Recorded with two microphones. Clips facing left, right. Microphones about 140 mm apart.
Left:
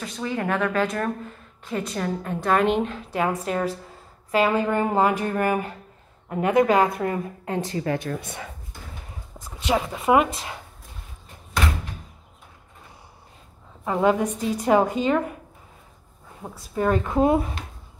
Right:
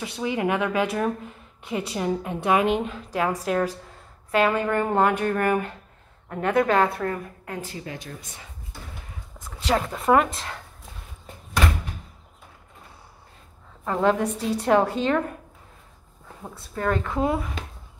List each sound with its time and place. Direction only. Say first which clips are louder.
0.0 s a woman's voice: right 2 dB; 10° right (ahead or behind); by 7.2 s 15° left (ahead or behind)
7.4 s speech: left 9 dB; 30° left (ahead or behind)
7.8 s speech: left 10 dB; 65° left (ahead or behind)
9.7 s a woman's voice: even; 5° left (ahead or behind)
13.8 s speech: left 1 dB; 5° left (ahead or behind)
16.7 s a woman's voice: left 4 dB; 15° left (ahead or behind)